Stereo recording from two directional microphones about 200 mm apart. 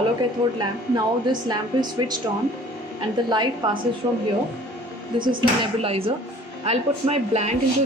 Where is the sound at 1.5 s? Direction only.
20° right (ahead or behind).